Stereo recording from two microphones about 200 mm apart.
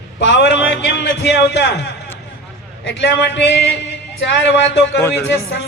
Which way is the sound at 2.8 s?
60° left (ahead or behind).